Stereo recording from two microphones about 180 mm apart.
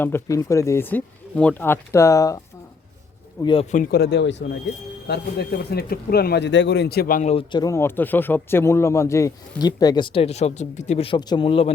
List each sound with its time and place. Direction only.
0.0 s speech: 15° left (ahead or behind)
3.4 s speech: 30° left (ahead or behind)
3.9 s speech: 70° left (ahead or behind)
7.2 s a man's voice: 40° left (ahead or behind)
7.5 s speech: 20° left (ahead or behind)